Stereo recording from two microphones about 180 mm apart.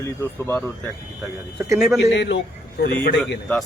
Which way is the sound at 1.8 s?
Centre (ahead or behind).